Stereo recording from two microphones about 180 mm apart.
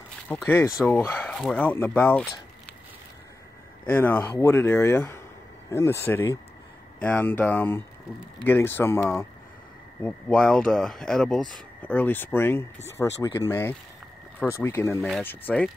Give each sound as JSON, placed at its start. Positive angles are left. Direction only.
{"t": 0.3, "sound": "speech", "side_deg": 10}
{"t": 3.8, "sound": "speech", "side_deg": 10}
{"t": 10.0, "sound": "speech", "side_deg": 5}
{"t": 15.0, "sound": "speech", "side_deg": 0}